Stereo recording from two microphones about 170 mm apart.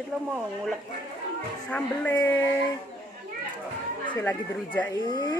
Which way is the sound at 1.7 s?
10° left (ahead or behind).